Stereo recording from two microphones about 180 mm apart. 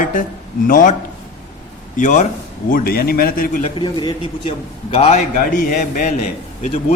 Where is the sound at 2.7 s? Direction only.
55° left (ahead or behind).